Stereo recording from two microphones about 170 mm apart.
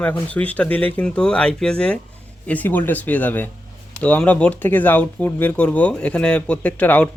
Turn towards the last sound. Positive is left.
turn(degrees=10)  # may be behind; listen again after turning